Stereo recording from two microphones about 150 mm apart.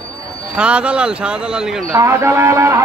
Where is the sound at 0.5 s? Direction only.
5° right (ahead or behind).